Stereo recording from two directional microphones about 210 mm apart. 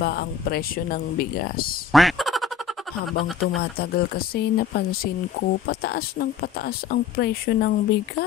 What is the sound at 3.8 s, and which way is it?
Speech, 50° left (ahead or behind).